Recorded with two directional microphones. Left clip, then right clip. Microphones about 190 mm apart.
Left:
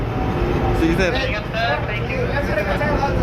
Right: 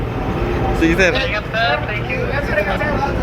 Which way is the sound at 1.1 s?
20° right (ahead or behind).